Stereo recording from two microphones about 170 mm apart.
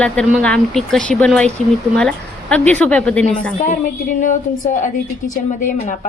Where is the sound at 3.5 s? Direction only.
50° left (ahead or behind).